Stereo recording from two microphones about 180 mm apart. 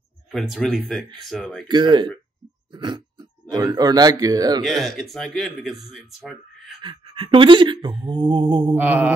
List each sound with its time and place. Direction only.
0.3 s speech: centre (ahead or behind)
1.7 s speech: 25° right (ahead or behind)
4.6 s speech: centre (ahead or behind)
6.8 s speech: 30° right (ahead or behind)
8.7 s mantra: 10° right (ahead or behind)